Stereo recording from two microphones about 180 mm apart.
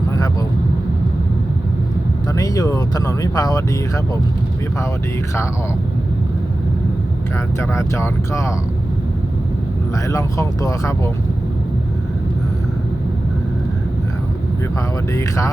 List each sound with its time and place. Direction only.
2.3 s speech: 20° left (ahead or behind)
7.6 s speech: 15° left (ahead or behind)
10.1 s speech: 20° left (ahead or behind)